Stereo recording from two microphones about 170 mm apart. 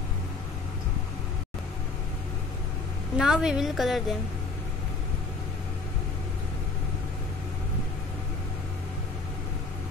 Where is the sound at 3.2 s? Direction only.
5° right (ahead or behind).